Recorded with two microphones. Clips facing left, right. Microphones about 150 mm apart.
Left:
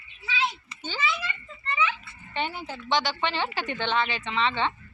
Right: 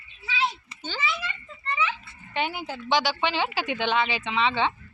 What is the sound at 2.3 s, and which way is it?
A woman's voice, 5° right (ahead or behind).